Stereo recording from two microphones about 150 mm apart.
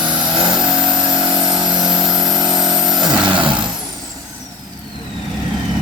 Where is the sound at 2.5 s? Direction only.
30° right (ahead or behind).